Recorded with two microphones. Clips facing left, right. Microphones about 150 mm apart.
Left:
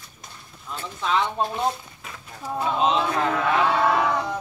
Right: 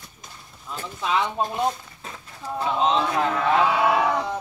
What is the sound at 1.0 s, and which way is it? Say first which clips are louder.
Speech: even; 10° right (ahead or behind).